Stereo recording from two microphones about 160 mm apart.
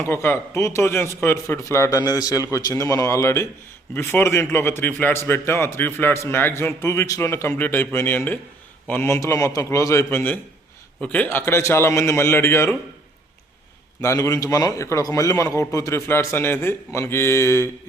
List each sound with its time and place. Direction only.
0.0 s a man's voice: 15° left (ahead or behind)
14.0 s a man's voice: 20° left (ahead or behind)